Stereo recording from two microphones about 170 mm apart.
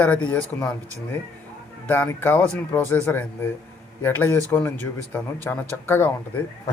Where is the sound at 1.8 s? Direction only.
10° left (ahead or behind).